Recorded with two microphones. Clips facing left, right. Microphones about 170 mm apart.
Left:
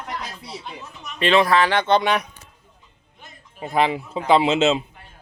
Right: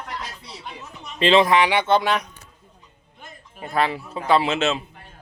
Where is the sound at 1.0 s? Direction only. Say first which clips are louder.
Right 1 dB; 30° right (ahead or behind); by 2.2 s 5° right (ahead or behind).